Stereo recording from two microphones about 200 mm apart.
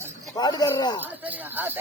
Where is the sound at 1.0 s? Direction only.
10° right (ahead or behind).